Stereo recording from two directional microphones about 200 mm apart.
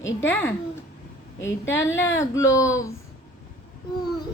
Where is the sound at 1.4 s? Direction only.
10° left (ahead or behind).